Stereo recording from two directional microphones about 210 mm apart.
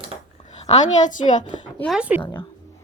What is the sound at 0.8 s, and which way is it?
Speech, 35° left (ahead or behind).